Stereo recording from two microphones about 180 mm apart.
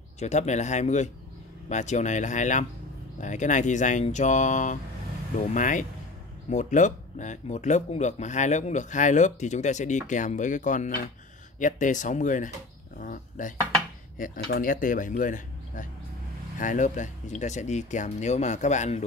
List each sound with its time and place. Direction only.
0.2 s speech: 40° left (ahead or behind)